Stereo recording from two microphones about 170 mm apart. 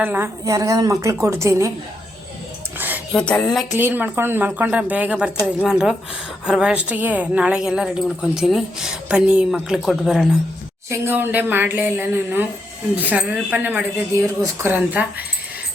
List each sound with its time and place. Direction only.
0.0 s a woman's voice: 10° right (ahead or behind)
2.7 s a sound: 10° right (ahead or behind)
3.1 s a woman's voice: 5° left (ahead or behind)
3.7 s a woman's voice: 10° right (ahead or behind)
10.8 s a woman's voice: 15° right (ahead or behind)